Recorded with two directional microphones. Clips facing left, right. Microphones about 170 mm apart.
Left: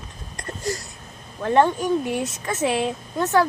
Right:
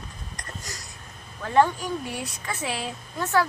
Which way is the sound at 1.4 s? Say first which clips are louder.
Left 3 dB; 25° left (ahead or behind).